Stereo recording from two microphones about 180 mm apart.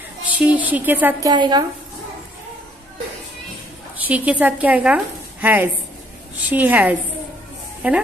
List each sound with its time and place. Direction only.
0.2 s a woman's voice: 10° right (ahead or behind)
1.3 s a woman's voice: 25° right (ahead or behind)
4.1 s a woman's voice: 10° right (ahead or behind)